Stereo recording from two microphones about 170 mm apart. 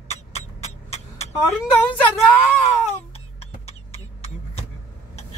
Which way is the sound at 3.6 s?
35° left (ahead or behind).